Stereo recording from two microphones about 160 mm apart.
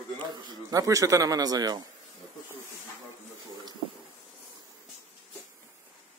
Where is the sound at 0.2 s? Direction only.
25° right (ahead or behind).